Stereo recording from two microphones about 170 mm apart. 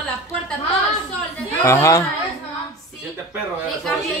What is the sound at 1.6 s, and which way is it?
Speech, 20° left (ahead or behind).